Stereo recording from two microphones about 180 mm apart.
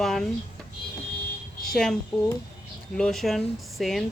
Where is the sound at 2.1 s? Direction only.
Centre (ahead or behind).